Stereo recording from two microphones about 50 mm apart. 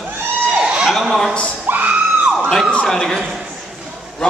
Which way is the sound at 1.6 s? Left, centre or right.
Right.